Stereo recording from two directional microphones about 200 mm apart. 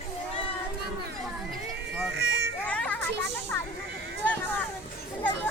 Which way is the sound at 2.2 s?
55° right (ahead or behind).